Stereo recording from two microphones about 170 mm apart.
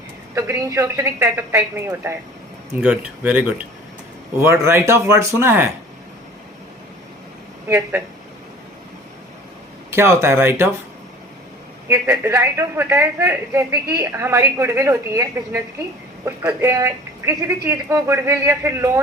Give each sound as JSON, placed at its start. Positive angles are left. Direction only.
{"t": 0.3, "sound": "a man's voice", "side_deg": -15}
{"t": 9.9, "sound": "a man's voice", "side_deg": -15}
{"t": 11.9, "sound": "a man's voice", "side_deg": -15}